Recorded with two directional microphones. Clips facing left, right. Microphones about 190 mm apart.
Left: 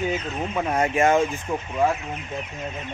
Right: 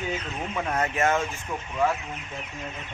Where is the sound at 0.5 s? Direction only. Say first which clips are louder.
Left 5 dB; 15° left (ahead or behind).